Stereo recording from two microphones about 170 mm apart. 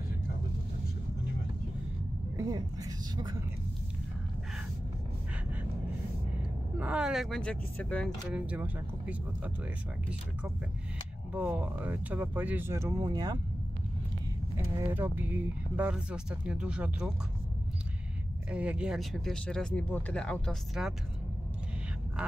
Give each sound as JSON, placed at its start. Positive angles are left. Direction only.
{"t": 2.3, "sound": "a woman's voice", "side_deg": -20}
{"t": 6.8, "sound": "speech", "side_deg": -5}
{"t": 8.3, "sound": "speech", "side_deg": -10}
{"t": 14.6, "sound": "speech", "side_deg": -15}
{"t": 18.5, "sound": "speech", "side_deg": -5}